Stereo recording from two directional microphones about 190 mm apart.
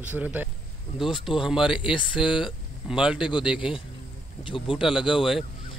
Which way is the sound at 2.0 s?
5° left (ahead or behind).